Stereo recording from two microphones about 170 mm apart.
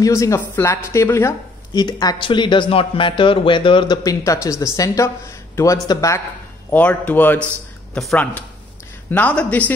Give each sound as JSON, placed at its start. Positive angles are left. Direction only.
{"t": 0.0, "sound": "a man's voice", "side_deg": 20}